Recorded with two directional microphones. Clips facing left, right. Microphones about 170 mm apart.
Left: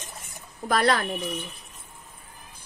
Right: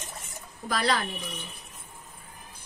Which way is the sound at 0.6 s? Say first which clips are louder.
Left 5 dB; 55° left (ahead or behind).